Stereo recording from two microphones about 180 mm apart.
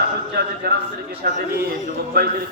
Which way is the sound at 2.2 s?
60° right (ahead or behind).